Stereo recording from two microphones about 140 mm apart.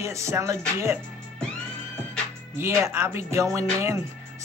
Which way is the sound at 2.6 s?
20° right (ahead or behind).